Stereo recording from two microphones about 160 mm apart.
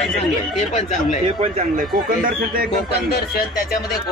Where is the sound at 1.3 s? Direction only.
50° right (ahead or behind).